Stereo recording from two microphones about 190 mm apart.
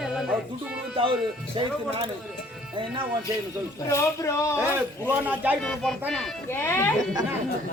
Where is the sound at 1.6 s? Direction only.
25° right (ahead or behind).